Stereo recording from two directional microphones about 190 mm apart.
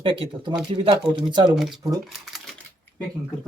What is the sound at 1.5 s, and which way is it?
Speech, centre (ahead or behind).